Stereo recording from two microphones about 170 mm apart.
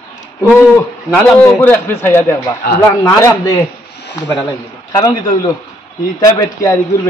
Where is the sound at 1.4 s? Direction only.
15° left (ahead or behind).